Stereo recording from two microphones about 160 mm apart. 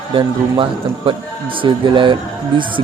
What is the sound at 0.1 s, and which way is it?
A man's voice, 30° right (ahead or behind).